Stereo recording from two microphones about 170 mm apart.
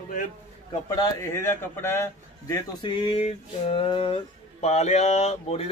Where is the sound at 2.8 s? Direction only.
30° left (ahead or behind).